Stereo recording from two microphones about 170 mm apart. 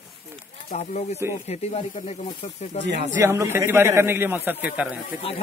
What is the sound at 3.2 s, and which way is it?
A man's voice, 15° right (ahead or behind).